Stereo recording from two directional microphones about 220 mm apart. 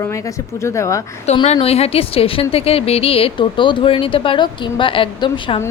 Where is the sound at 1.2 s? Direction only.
30° left (ahead or behind).